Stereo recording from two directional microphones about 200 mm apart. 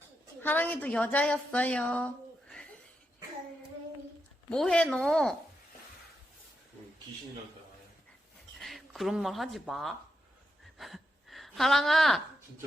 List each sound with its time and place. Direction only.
0.4 s a woman's voice: 10° left (ahead or behind)
4.4 s a woman's voice: 5° left (ahead or behind)
8.5 s speech: centre (ahead or behind)
10.8 s a sound: centre (ahead or behind)